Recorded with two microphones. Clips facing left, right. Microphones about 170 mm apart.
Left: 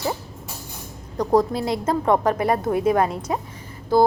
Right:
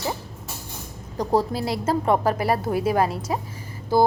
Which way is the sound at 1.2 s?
30° right (ahead or behind).